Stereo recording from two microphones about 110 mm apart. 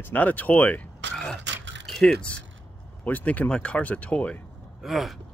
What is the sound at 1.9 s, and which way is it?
Speech, 5° left (ahead or behind).